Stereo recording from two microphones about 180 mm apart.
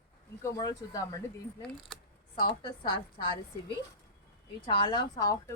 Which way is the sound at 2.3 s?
25° left (ahead or behind).